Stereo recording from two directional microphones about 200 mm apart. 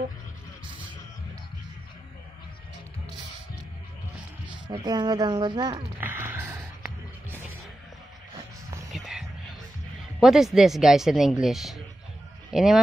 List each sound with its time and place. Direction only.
4.6 s speech: 20° right (ahead or behind)
5.9 s music: 10° right (ahead or behind)
8.9 s a sound: centre (ahead or behind)
10.2 s speech: centre (ahead or behind)